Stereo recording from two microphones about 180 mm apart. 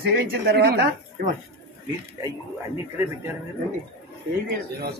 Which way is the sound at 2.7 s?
15° right (ahead or behind).